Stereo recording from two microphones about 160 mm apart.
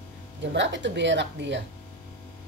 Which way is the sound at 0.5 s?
90° right.